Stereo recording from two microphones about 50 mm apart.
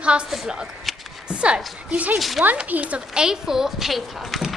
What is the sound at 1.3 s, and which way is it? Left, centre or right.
Speech, right.